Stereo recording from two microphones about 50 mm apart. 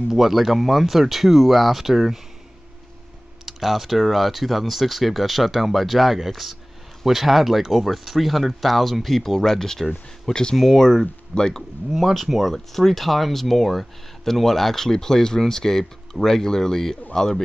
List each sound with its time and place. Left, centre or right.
0.1 s speech: centre
3.4 s speech: centre
11.9 s speech: centre